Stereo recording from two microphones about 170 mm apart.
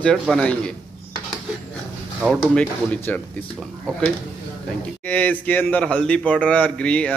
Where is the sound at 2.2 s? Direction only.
5° left (ahead or behind).